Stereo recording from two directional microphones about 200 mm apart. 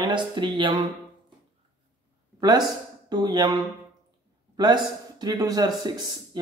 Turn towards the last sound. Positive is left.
turn(degrees=-20)  # may be behind; listen again after turning